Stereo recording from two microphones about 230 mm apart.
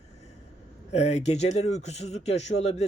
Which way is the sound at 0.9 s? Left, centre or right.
Left.